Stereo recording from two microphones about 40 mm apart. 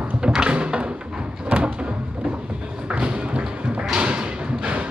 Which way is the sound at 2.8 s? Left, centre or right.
Right.